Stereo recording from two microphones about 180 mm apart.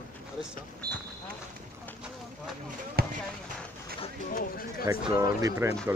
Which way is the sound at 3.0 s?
60° right (ahead or behind).